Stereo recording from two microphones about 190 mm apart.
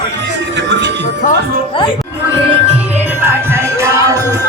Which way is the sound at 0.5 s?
65° right (ahead or behind).